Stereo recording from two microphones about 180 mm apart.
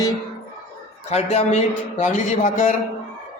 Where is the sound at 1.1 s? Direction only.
35° left (ahead or behind).